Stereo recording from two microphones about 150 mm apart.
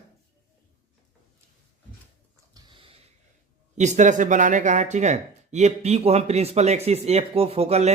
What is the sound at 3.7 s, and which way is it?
Speech, 50° right (ahead or behind).